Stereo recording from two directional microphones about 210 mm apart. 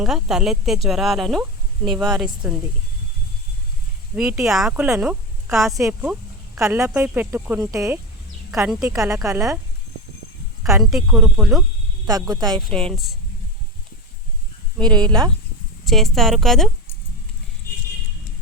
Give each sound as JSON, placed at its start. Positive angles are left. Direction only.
{"t": 0.0, "sound": "speech", "side_deg": 0}
{"t": 4.1, "sound": "speech", "side_deg": -5}
{"t": 5.7, "sound": "speech", "side_deg": -15}
{"t": 10.7, "sound": "speech", "side_deg": -5}
{"t": 12.0, "sound": "speech", "side_deg": -15}
{"t": 12.6, "sound": "speech", "side_deg": 0}
{"t": 15.9, "sound": "speech", "side_deg": 0}